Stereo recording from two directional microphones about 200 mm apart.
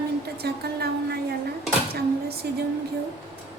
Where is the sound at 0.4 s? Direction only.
50° right (ahead or behind).